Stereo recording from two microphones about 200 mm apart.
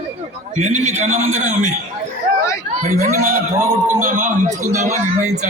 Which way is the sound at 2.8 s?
35° right (ahead or behind).